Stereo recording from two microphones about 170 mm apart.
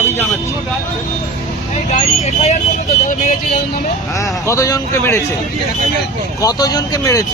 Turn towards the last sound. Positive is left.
turn(degrees=20)  # may be behind; listen again after turning